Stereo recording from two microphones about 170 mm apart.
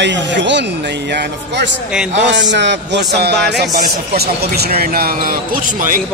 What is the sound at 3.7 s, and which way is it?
Speech, 65° right (ahead or behind).